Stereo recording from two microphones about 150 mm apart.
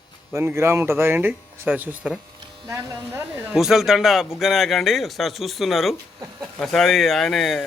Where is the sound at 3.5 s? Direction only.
5° right (ahead or behind).